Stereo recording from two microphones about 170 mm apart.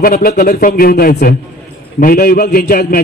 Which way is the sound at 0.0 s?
60° left (ahead or behind).